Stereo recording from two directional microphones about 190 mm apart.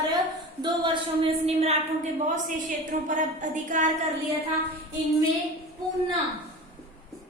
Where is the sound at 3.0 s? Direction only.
40° right (ahead or behind).